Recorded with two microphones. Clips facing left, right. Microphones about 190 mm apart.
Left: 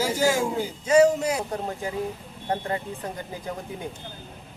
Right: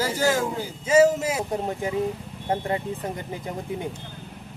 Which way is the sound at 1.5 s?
20° right (ahead or behind).